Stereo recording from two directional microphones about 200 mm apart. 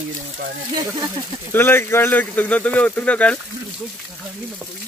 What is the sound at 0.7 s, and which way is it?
Speech, 20° right (ahead or behind).